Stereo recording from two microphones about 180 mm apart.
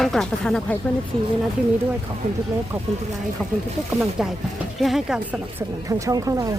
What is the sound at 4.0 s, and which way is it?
Speech, centre (ahead or behind).